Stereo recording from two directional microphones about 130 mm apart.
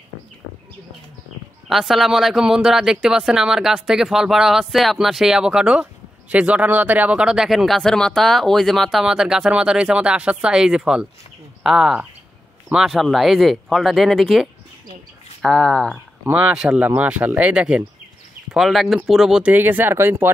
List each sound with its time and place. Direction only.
1.7 s speech: centre (ahead or behind)
16.3 s speech: 10° right (ahead or behind)
19.5 s speech: 15° right (ahead or behind)